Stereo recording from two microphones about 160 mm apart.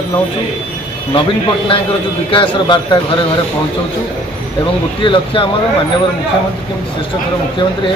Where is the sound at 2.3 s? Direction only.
30° left (ahead or behind).